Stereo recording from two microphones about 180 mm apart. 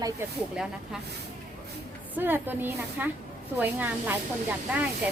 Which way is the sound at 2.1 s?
10° right (ahead or behind).